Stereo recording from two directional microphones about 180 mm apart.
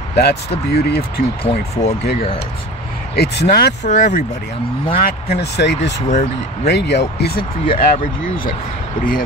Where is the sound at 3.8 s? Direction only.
45° left (ahead or behind).